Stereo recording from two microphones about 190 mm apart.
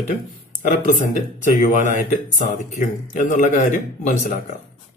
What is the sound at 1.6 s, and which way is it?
Speech, 40° left (ahead or behind).